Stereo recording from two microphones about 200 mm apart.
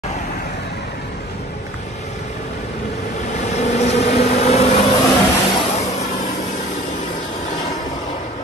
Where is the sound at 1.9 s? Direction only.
35° left (ahead or behind).